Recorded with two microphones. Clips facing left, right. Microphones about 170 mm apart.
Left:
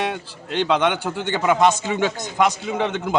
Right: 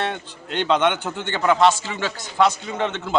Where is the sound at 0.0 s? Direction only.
5° left (ahead or behind).